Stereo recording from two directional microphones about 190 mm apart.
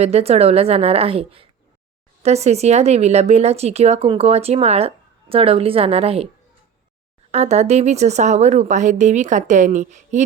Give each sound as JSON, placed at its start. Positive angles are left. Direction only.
{"t": 0.0, "sound": "speech", "side_deg": -35}
{"t": 7.3, "sound": "speech", "side_deg": -35}